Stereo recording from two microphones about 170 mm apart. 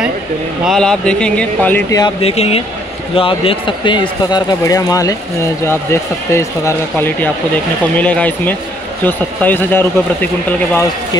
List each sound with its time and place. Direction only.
0.7 s speech: 5° left (ahead or behind)
1.9 s a man's voice: 20° left (ahead or behind)
2.2 s a man's voice: 35° left (ahead or behind); by 9.8 s 10° left (ahead or behind)